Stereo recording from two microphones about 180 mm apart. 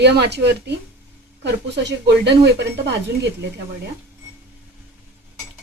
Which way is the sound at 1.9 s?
70° right (ahead or behind).